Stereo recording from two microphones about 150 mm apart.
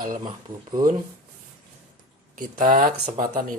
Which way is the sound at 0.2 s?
25° right (ahead or behind).